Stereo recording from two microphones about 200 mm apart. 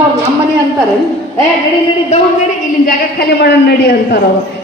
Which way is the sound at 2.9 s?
50° left (ahead or behind).